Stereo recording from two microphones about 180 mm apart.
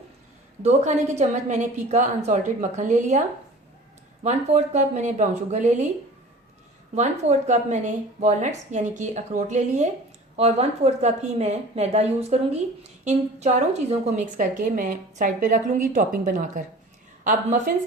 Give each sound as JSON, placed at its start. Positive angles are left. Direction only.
{"t": 0.6, "sound": "a woman's voice", "side_deg": -40}
{"t": 6.9, "sound": "a woman's voice", "side_deg": -40}